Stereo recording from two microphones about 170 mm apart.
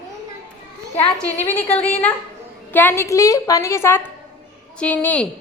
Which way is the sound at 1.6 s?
35° left (ahead or behind).